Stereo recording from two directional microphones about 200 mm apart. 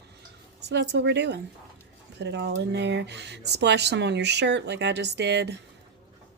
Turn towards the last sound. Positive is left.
turn(degrees=-60)  # may be behind; listen again after turning